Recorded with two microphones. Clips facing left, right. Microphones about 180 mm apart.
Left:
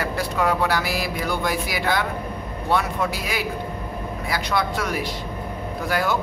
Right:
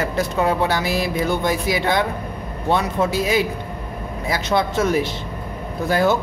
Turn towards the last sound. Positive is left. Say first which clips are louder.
# right 5 dB
turn(degrees=-25)  # may be behind; listen again after turning